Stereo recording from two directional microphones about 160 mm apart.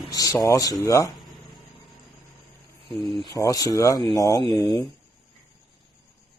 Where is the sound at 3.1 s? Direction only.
30° right (ahead or behind).